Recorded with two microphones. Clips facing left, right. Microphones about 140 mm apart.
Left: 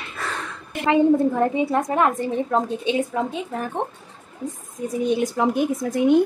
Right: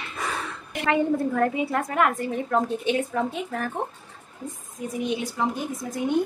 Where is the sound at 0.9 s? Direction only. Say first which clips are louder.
Left 6 dB; 25° left (ahead or behind).